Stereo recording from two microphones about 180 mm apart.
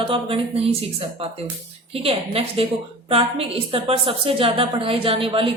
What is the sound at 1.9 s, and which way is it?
A woman's voice, 30° right (ahead or behind).